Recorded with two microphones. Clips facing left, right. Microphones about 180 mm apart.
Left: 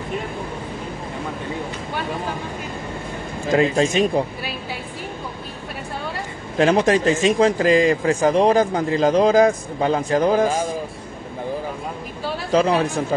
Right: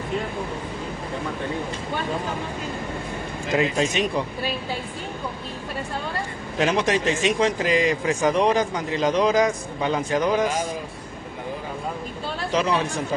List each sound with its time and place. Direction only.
3.5 s speech: 40° left (ahead or behind)
6.6 s speech: 40° left (ahead or behind)
8.5 s speech: 45° left (ahead or behind)
9.0 s speech: 35° left (ahead or behind)
9.3 s speech: 45° left (ahead or behind)